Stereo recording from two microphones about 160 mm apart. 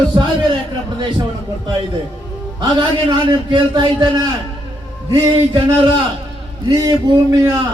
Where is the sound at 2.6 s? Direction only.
30° right (ahead or behind).